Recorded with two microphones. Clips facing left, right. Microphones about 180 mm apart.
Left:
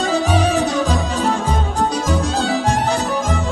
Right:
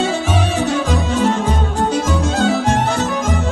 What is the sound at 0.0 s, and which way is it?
Music, 35° left (ahead or behind).